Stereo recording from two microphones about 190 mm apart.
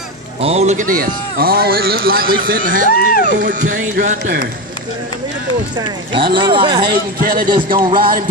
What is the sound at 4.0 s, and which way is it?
Speech, 50° right (ahead or behind).